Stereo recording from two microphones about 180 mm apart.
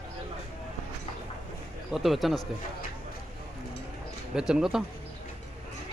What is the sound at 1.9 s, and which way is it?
Speech, centre (ahead or behind).